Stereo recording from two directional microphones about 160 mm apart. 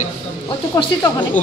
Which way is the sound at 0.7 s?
20° left (ahead or behind).